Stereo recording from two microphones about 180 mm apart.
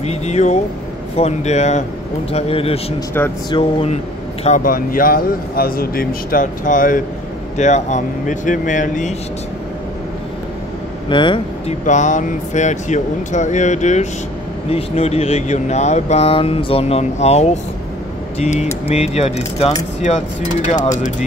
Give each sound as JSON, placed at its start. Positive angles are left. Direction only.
{"t": 0.0, "sound": "speech", "side_deg": 35}
{"t": 4.5, "sound": "speech", "side_deg": 50}
{"t": 11.1, "sound": "speech", "side_deg": 25}
{"t": 11.8, "sound": "speech", "side_deg": 45}